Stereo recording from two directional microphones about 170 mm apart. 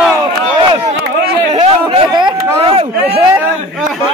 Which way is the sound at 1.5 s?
35° right (ahead or behind).